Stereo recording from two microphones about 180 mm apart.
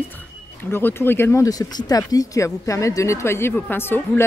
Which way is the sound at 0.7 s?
15° left (ahead or behind).